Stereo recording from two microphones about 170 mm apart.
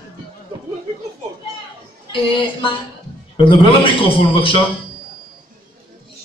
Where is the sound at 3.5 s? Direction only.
30° left (ahead or behind).